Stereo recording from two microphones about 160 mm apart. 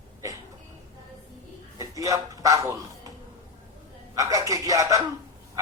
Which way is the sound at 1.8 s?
20° right (ahead or behind).